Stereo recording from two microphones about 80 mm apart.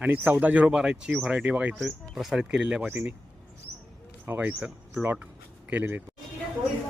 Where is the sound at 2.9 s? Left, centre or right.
Right.